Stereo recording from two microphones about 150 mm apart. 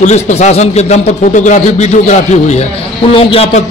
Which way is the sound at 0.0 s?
50° left (ahead or behind).